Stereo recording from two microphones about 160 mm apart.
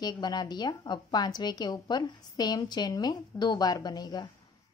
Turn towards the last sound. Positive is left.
turn(degrees=25)  # may be behind; listen again after turning